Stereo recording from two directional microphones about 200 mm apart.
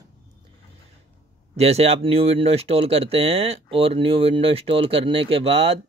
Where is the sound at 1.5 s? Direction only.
30° right (ahead or behind).